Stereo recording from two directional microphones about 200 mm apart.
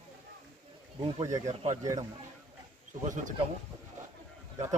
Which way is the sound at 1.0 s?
35° right (ahead or behind).